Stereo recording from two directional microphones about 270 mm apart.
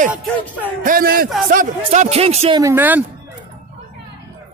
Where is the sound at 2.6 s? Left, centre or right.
Centre.